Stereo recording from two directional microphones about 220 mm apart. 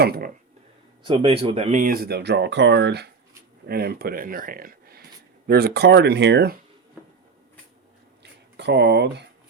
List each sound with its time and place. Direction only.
0.0 s speech: 45° right (ahead or behind)
1.0 s speech: 25° right (ahead or behind); by 6.6 s 50° right (ahead or behind)
8.2 s a sound: 50° right (ahead or behind)